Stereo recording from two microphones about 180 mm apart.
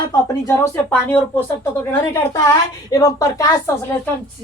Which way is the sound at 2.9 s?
20° left (ahead or behind).